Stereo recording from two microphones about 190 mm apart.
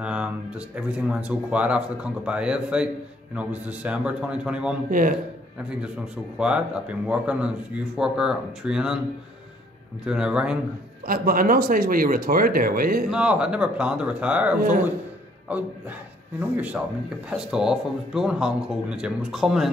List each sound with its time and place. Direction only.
0.0 s speech: 5° right (ahead or behind)
6.3 s speech: 5° right (ahead or behind)
10.0 s speech: 5° right (ahead or behind)
11.1 s speech: 50° right (ahead or behind)
13.1 s speech: 5° right (ahead or behind)
16.3 s speech: 10° right (ahead or behind)